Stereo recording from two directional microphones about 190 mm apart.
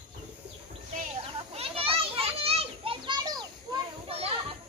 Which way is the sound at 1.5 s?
30° right (ahead or behind).